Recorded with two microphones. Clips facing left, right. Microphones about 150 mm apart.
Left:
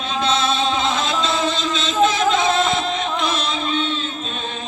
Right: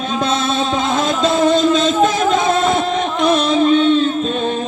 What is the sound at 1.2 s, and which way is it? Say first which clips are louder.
Music: right 9 dB; 50° right (ahead or behind).